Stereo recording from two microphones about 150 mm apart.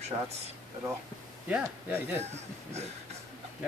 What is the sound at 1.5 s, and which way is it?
Speech, 10° right (ahead or behind).